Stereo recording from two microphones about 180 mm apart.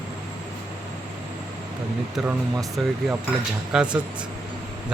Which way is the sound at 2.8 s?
Centre (ahead or behind).